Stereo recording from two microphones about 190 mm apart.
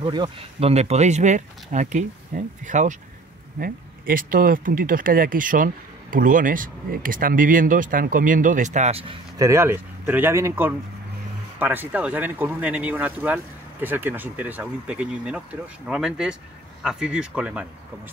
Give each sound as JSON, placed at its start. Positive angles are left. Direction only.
{"t": 0.0, "sound": "speech", "side_deg": -25}
{"t": 9.4, "sound": "speech", "side_deg": -15}